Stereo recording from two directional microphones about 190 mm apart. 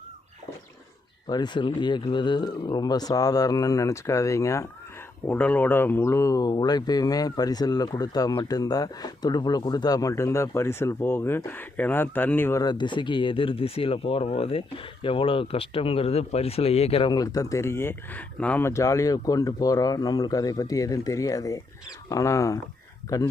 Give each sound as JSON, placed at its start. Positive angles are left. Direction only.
{"t": 1.3, "sound": "speech", "side_deg": 25}